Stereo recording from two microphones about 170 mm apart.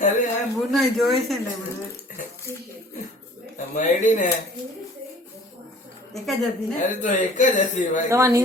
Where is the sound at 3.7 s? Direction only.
50° left (ahead or behind).